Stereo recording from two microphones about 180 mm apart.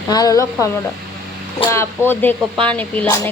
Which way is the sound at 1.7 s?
15° left (ahead or behind).